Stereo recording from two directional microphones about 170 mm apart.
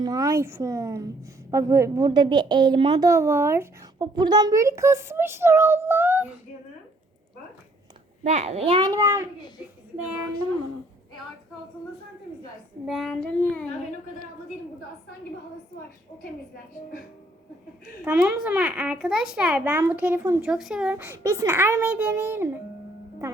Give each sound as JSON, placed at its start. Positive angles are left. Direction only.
{"t": 0.0, "sound": "a woman's voice", "side_deg": -20}
{"t": 3.9, "sound": "a child's voice", "side_deg": -25}
{"t": 8.2, "sound": "a child's voice", "side_deg": -40}
{"t": 12.8, "sound": "child singing", "side_deg": 0}
{"t": 18.0, "sound": "a child's voice", "side_deg": -10}
{"t": 20.5, "sound": "a child's voice", "side_deg": 0}